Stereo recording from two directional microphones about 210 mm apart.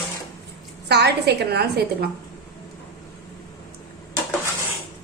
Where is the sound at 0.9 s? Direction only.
50° right (ahead or behind).